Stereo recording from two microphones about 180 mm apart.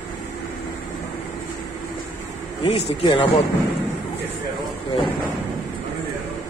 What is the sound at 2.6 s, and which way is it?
Speech, 30° left (ahead or behind).